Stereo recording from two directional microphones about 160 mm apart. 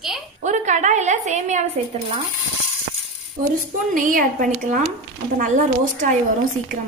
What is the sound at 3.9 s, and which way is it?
Speech, 55° right (ahead or behind).